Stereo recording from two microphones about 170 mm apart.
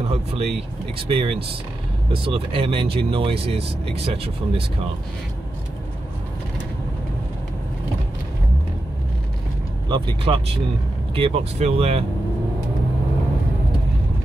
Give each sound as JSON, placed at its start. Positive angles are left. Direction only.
{"t": 0.1, "sound": "speech", "side_deg": -35}
{"t": 9.8, "sound": "speech", "side_deg": -30}